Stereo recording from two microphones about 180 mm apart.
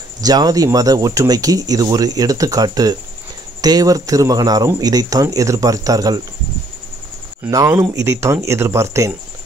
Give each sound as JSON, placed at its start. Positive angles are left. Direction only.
{"t": 0.2, "sound": "speech", "side_deg": -20}
{"t": 7.4, "sound": "speech", "side_deg": -20}